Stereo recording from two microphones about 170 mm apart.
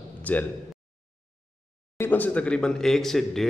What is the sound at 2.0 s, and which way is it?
A man's voice, 10° left (ahead or behind).